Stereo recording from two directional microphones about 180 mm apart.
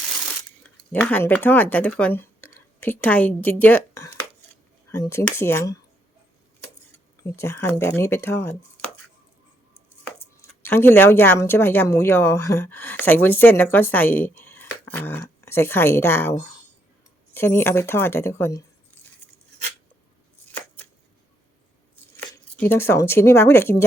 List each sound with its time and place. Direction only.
0.6 s speech: 10° left (ahead or behind)
7.3 s speech: 15° left (ahead or behind)
10.6 s speech: 10° left (ahead or behind)
22.5 s speech: 10° left (ahead or behind)